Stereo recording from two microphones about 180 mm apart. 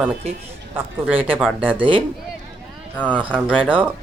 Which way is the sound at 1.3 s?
10° right (ahead or behind).